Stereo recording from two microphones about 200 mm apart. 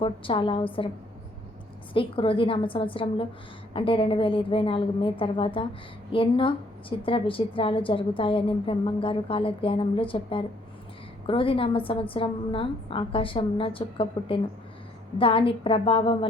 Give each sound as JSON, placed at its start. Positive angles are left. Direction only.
{"t": 0.0, "sound": "a woman's voice", "side_deg": 25}
{"t": 1.9, "sound": "a woman's voice", "side_deg": 25}